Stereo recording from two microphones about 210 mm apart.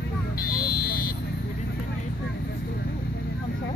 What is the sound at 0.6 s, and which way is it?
Buzzer, 45° left (ahead or behind).